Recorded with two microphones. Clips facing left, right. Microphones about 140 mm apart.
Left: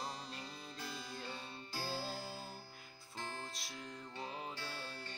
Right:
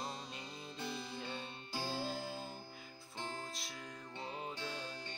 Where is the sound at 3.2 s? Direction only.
20° right (ahead or behind).